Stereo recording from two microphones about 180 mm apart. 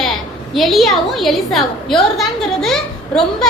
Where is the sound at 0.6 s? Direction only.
Centre (ahead or behind).